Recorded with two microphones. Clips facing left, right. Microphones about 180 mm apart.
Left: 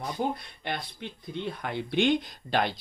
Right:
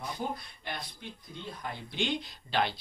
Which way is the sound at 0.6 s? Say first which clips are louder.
Left 7 dB; 70° left (ahead or behind).